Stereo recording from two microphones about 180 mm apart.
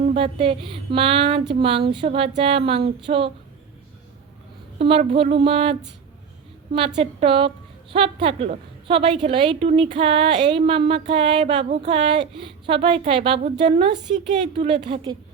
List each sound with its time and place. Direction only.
0.0 s a woman's voice: 35° right (ahead or behind)
4.8 s a woman's voice: 30° right (ahead or behind)
6.7 s a woman's voice: 30° right (ahead or behind)